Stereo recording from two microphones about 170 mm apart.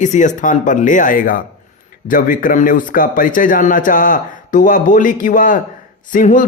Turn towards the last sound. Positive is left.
turn(degrees=50)  # may be behind; listen again after turning